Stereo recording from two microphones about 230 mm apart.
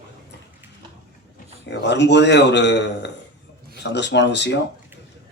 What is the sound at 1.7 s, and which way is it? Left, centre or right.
A man's voice, left.